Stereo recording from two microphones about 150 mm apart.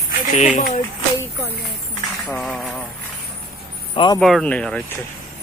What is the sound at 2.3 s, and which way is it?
Speech, centre (ahead or behind).